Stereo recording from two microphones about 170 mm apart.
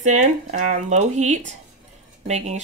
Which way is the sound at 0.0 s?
45° right (ahead or behind).